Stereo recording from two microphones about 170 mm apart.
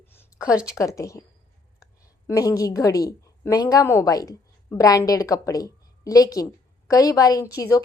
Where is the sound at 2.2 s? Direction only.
20° left (ahead or behind).